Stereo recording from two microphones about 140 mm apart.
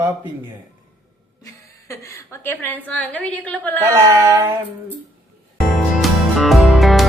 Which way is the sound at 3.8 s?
20° right (ahead or behind).